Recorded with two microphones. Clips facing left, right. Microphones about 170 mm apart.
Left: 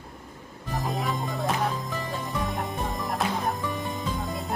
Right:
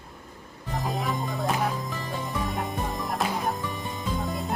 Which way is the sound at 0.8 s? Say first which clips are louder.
Even; centre (ahead or behind).